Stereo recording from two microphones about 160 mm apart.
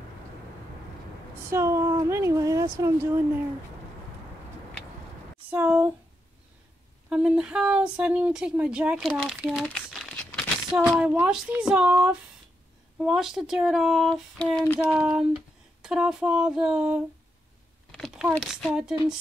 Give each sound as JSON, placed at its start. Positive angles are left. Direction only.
{"t": 1.5, "sound": "speech", "side_deg": -15}
{"t": 5.5, "sound": "speech", "side_deg": -10}
{"t": 7.1, "sound": "speech", "side_deg": -5}
{"t": 9.7, "sound": "crumpling", "side_deg": 5}
{"t": 10.7, "sound": "speech", "side_deg": -5}
{"t": 14.8, "sound": "speech", "side_deg": -5}
{"t": 17.9, "sound": "a sound", "side_deg": 0}
{"t": 18.5, "sound": "speech", "side_deg": -5}